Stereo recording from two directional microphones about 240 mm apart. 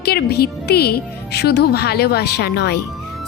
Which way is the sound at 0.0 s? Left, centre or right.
Left.